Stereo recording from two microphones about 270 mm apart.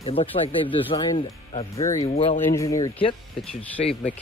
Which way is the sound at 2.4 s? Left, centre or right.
Centre.